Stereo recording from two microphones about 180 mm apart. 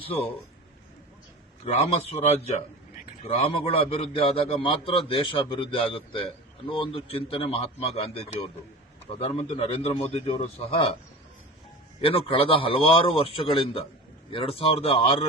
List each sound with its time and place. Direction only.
0.0 s a man's voice: 30° left (ahead or behind)
1.6 s a man's voice: 35° left (ahead or behind)
12.0 s a man's voice: 30° left (ahead or behind)